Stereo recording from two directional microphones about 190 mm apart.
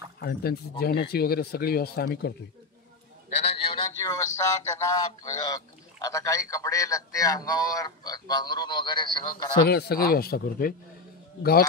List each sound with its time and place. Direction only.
0.2 s speech: 55° left (ahead or behind)
3.3 s a sound: 35° left (ahead or behind)
3.9 s speech: 15° left (ahead or behind)
9.7 s speech: 55° left (ahead or behind)